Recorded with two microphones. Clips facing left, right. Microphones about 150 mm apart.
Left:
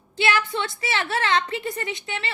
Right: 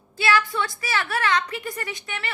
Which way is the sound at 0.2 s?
20° left (ahead or behind).